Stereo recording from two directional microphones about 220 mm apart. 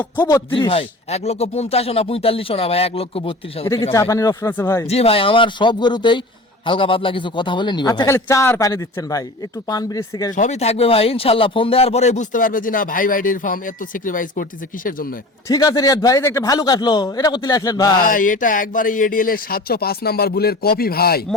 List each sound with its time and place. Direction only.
0.2 s a man's voice: 15° left (ahead or behind)
0.5 s a man's voice: 25° left (ahead or behind)
4.9 s a man's voice: 25° left (ahead or behind)
10.3 s speech: 30° left (ahead or behind)
15.4 s a man's voice: 15° left (ahead or behind)
18.0 s speech: 35° left (ahead or behind)